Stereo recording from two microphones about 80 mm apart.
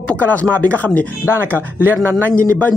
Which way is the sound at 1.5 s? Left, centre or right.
Right.